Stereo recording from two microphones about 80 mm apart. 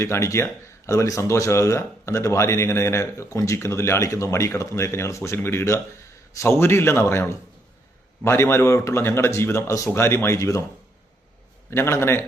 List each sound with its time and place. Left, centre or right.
0.0 s speech: left
0.9 s speech: left
9.9 s speech: left
11.7 s speech: left